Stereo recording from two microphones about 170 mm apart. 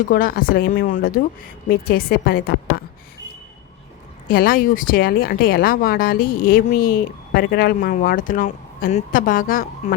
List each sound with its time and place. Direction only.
0.1 s speech: 55° left (ahead or behind)
4.3 s speech: 60° left (ahead or behind)